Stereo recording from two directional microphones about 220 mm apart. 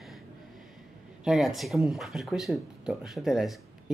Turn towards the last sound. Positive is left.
turn(degrees=0)  # may be behind; listen again after turning